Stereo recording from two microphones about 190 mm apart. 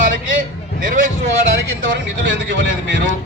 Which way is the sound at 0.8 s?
45° right (ahead or behind).